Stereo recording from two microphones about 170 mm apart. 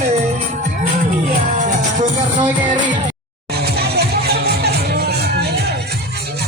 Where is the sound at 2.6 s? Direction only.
25° right (ahead or behind).